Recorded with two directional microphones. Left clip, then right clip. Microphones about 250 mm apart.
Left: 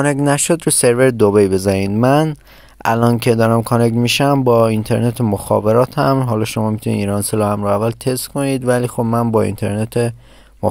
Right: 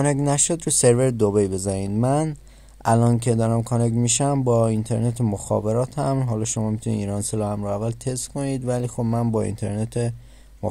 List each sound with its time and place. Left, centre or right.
0.0 s speech: left